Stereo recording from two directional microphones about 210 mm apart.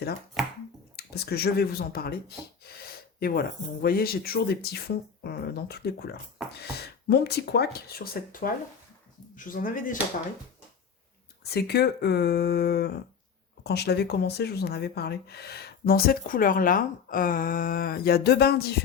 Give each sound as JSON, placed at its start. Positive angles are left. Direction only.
{"t": 0.9, "sound": "speech", "side_deg": 50}
{"t": 11.5, "sound": "speech", "side_deg": 50}